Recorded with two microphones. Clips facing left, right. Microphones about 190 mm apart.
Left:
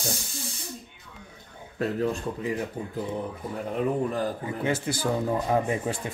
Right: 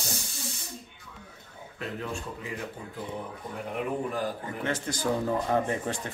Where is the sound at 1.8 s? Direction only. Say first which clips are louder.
Left 8 dB; 40° left (ahead or behind).